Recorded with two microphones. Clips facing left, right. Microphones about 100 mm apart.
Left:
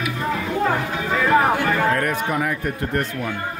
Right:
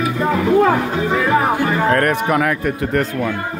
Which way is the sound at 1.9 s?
60° right (ahead or behind).